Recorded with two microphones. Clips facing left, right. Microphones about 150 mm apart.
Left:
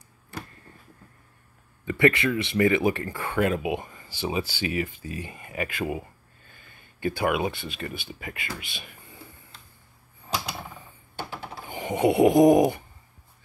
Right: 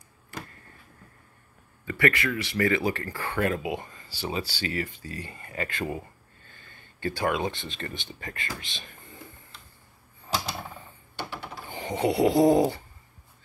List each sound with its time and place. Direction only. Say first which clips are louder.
1.9 s speech: left 4 dB; 20° left (ahead or behind)
11.1 s a sound: left 1 dB; 40° left (ahead or behind)
11.6 s snoring: left 4 dB; 15° left (ahead or behind)